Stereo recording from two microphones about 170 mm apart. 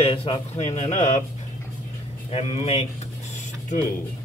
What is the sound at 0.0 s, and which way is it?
Speech, 30° left (ahead or behind).